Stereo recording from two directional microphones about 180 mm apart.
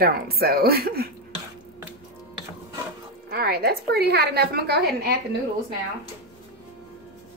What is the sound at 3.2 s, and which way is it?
A woman's voice, 60° right (ahead or behind).